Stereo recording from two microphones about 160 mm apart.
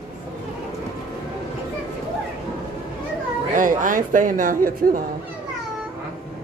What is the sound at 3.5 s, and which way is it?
Speech, 55° right (ahead or behind).